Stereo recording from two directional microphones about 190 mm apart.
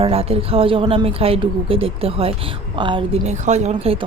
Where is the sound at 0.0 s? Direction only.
30° right (ahead or behind).